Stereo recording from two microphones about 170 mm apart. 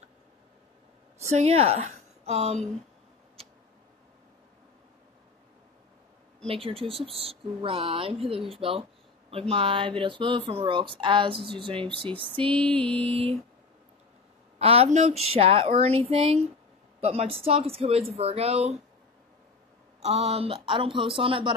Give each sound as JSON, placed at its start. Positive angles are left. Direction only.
{"t": 1.2, "sound": "a woman's voice", "side_deg": -40}
{"t": 6.4, "sound": "speech", "side_deg": -35}
{"t": 12.2, "sound": "a sound", "side_deg": -30}
{"t": 12.4, "sound": "music", "side_deg": 5}
{"t": 12.8, "sound": "speech", "side_deg": -35}
{"t": 14.6, "sound": "speech", "side_deg": -35}
{"t": 20.0, "sound": "speech", "side_deg": -40}